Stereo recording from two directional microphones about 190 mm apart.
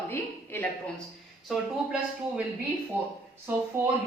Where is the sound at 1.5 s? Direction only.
5° right (ahead or behind).